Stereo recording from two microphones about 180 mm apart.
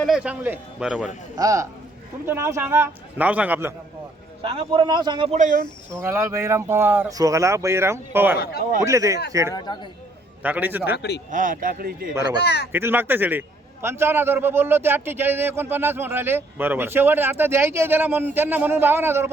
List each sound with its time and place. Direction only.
0.0 s speech: 5° right (ahead or behind)
1.4 s a man's voice: 20° right (ahead or behind)
4.4 s a man's voice: 30° right (ahead or behind)
5.4 s a man's voice: 45° right (ahead or behind)
5.9 s speech: 15° right (ahead or behind)
9.5 s speech: 25° left (ahead or behind)
10.4 s speech: 10° right (ahead or behind)
10.9 s a man's voice: 70° left (ahead or behind)
11.3 s a man's voice: 50° right (ahead or behind)
12.4 s speech: 65° left (ahead or behind)
12.7 s speech: 10° right (ahead or behind)